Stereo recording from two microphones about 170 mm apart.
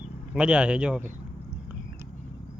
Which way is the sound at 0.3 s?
5° right (ahead or behind).